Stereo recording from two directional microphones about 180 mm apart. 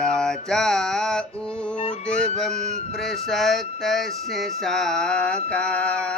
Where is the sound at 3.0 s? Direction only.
Centre (ahead or behind).